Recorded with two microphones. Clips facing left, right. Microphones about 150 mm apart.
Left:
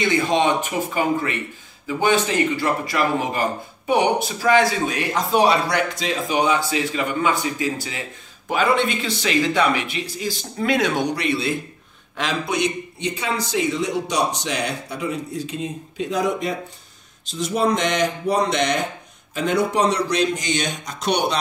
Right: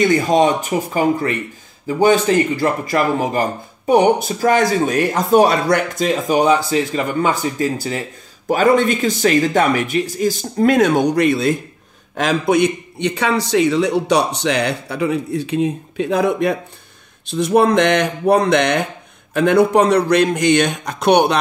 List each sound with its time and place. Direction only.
0.0 s a man's voice: 45° right (ahead or behind); by 21.4 s 60° right (ahead or behind)